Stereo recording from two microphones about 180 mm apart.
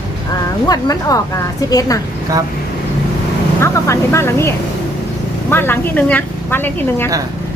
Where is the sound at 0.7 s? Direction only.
20° left (ahead or behind).